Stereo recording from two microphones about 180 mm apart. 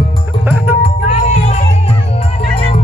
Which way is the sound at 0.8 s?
35° left (ahead or behind).